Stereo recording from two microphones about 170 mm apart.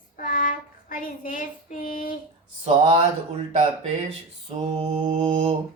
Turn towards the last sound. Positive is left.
turn(degrees=-35)  # may be behind; listen again after turning